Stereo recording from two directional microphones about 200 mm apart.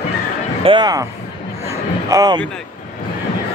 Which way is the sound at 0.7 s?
20° right (ahead or behind).